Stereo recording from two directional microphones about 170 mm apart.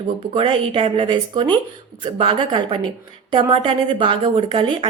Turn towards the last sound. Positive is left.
turn(degrees=-30)  # may be behind; listen again after turning